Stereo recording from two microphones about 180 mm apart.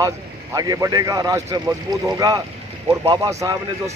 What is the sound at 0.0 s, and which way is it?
Speech, 20° right (ahead or behind).